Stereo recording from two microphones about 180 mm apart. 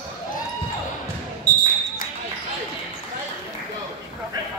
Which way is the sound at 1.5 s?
20° right (ahead or behind).